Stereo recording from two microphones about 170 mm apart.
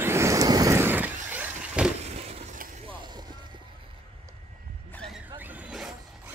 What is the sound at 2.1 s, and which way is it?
Vehicle, 40° right (ahead or behind).